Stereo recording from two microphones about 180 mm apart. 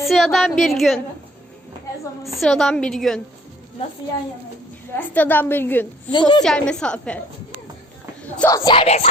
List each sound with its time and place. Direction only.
0.0 s a woman's voice: centre (ahead or behind)
2.2 s a woman's voice: centre (ahead or behind)
4.9 s a woman's voice: 10° left (ahead or behind)
6.1 s a woman's voice: 25° left (ahead or behind)
6.4 s a woman's voice: 5° left (ahead or behind)
8.4 s a woman's voice: 15° left (ahead or behind)
8.7 s speech: 30° left (ahead or behind)